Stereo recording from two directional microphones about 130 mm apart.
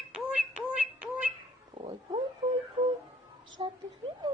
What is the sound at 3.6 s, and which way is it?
Frog, 40° right (ahead or behind).